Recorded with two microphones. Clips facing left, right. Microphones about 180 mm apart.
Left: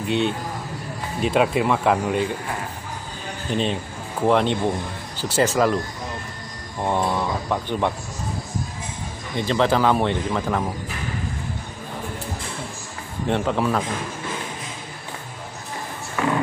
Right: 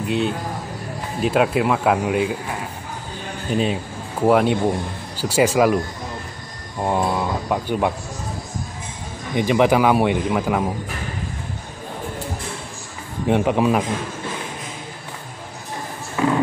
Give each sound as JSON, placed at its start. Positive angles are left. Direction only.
{"t": 0.0, "sound": "speech", "side_deg": 0}
{"t": 3.4, "sound": "speech", "side_deg": -5}
{"t": 6.8, "sound": "speech", "side_deg": -10}
{"t": 9.3, "sound": "speech", "side_deg": -15}
{"t": 13.3, "sound": "speech", "side_deg": -15}
{"t": 16.2, "sound": "music", "side_deg": -25}